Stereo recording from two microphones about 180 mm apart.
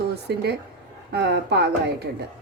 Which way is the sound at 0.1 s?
65° right (ahead or behind).